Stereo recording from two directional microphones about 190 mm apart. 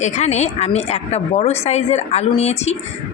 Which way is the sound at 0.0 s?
35° left (ahead or behind).